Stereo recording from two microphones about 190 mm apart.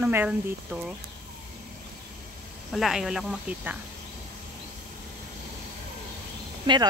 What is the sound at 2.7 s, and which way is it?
Speech, centre (ahead or behind).